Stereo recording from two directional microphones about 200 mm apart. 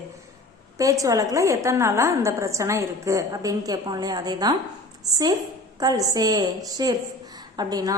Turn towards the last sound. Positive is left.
turn(degrees=-20)  # may be behind; listen again after turning